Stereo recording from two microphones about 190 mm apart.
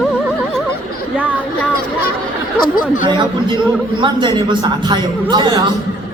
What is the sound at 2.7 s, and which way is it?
Speech, 45° left (ahead or behind).